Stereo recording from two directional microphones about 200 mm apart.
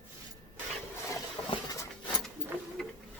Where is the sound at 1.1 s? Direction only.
20° left (ahead or behind).